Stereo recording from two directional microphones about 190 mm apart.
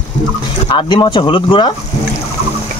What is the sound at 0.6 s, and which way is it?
Speech, 25° left (ahead or behind).